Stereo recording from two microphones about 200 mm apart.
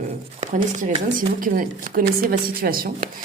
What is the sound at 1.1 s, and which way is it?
A woman's voice, 45° right (ahead or behind).